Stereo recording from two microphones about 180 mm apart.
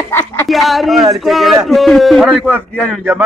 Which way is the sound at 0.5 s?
Centre (ahead or behind).